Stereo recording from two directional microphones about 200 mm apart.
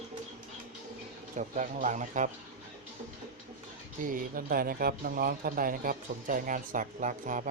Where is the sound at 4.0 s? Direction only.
45° right (ahead or behind).